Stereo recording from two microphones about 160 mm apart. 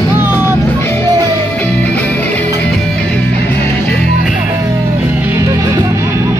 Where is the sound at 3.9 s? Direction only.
5° left (ahead or behind).